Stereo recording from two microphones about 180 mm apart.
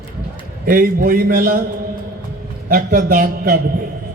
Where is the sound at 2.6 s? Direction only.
50° right (ahead or behind).